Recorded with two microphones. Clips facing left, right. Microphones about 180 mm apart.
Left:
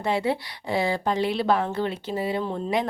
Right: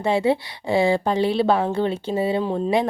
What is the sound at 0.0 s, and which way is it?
A woman's voice, 25° right (ahead or behind).